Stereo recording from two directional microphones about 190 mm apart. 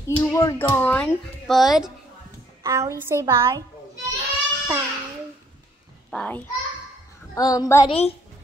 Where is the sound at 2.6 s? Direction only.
15° right (ahead or behind).